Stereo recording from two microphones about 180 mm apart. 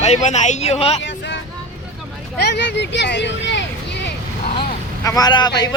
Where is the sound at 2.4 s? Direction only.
65° left (ahead or behind).